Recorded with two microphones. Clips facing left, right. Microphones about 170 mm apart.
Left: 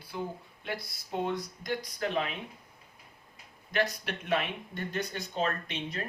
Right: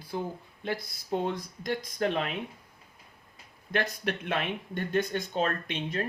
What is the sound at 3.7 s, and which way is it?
Speech, 55° right (ahead or behind).